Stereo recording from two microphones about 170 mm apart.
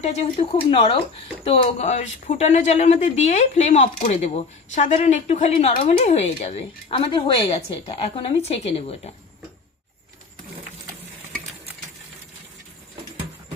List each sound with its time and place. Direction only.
0.0 s speech: 40° left (ahead or behind)